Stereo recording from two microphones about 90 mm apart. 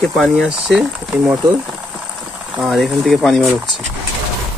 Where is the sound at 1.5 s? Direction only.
15° right (ahead or behind).